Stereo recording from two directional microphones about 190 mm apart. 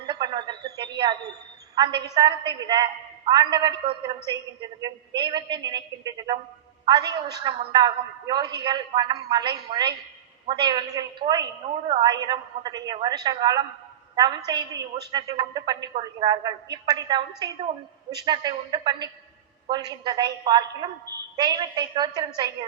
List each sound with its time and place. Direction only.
0.1 s a sound: 25° right (ahead or behind)
1.7 s a man's voice: 25° right (ahead or behind)
14.8 s a woman's voice: 60° right (ahead or behind)
15.1 s a man's voice: 20° right (ahead or behind)